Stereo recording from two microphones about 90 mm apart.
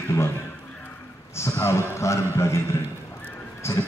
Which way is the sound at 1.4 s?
25° left (ahead or behind).